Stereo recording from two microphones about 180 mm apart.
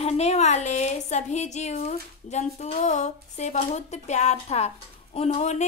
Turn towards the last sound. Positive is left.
turn(degrees=40)  # may be behind; listen again after turning